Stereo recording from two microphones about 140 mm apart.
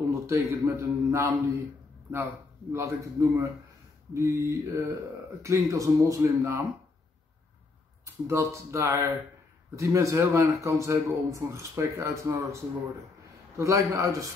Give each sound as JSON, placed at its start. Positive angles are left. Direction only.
{"t": 0.1, "sound": "speech", "side_deg": -20}
{"t": 2.7, "sound": "speech", "side_deg": -20}
{"t": 8.0, "sound": "speech", "side_deg": -20}